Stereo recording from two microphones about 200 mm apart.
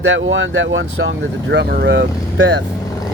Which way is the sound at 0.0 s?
65° right (ahead or behind).